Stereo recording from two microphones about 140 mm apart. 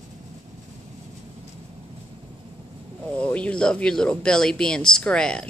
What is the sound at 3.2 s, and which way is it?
Speech, 10° left (ahead or behind).